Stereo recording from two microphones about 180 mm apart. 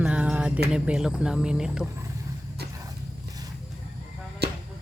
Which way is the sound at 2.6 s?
65° right (ahead or behind).